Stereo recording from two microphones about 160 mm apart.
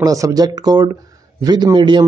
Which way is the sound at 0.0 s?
20° right (ahead or behind).